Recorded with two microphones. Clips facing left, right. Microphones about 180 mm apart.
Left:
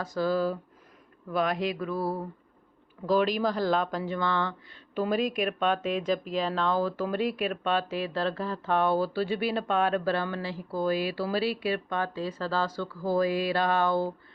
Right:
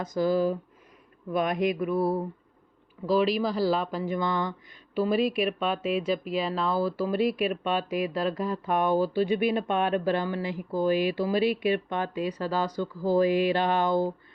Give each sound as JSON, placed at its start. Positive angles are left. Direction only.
{"t": 0.0, "sound": "speech", "side_deg": -15}
{"t": 3.3, "sound": "speech", "side_deg": -5}